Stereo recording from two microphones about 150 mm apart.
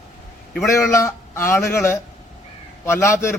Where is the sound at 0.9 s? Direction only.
15° left (ahead or behind).